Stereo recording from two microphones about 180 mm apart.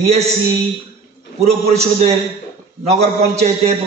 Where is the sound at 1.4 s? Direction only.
35° right (ahead or behind).